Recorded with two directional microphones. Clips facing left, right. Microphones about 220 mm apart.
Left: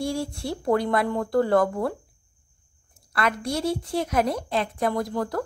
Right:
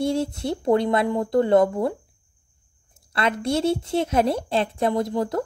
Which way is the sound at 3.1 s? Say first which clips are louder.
Right 3 dB; 25° right (ahead or behind).